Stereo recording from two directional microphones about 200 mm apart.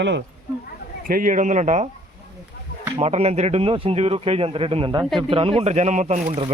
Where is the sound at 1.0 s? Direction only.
45° right (ahead or behind).